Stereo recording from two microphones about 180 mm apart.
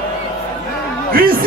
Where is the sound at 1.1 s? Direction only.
55° right (ahead or behind).